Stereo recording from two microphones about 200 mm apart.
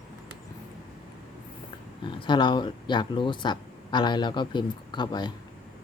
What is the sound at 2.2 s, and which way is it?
Speech, 25° left (ahead or behind).